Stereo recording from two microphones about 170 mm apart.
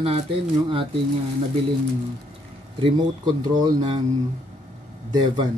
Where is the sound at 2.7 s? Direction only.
25° right (ahead or behind).